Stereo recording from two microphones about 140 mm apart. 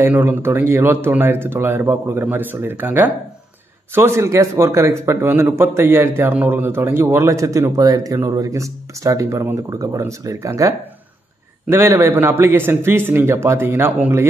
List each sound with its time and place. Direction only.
0.0 s a man's voice: 15° right (ahead or behind)
11.7 s speech: 20° right (ahead or behind)